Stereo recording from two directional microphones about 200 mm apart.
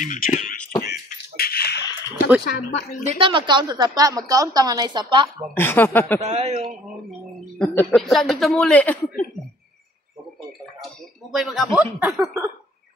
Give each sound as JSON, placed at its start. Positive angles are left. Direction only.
{"t": 0.0, "sound": "speech", "side_deg": 40}
{"t": 0.6, "sound": "a sound", "side_deg": 10}
{"t": 0.8, "sound": "a sound", "side_deg": 50}
{"t": 2.0, "sound": "a sound", "side_deg": -10}
{"t": 3.1, "sound": "a woman's voice", "side_deg": -25}
{"t": 5.5, "sound": "speech", "side_deg": 10}
{"t": 6.2, "sound": "a man's voice", "side_deg": -30}
{"t": 7.5, "sound": "speech", "side_deg": 5}
{"t": 11.3, "sound": "speech", "side_deg": 0}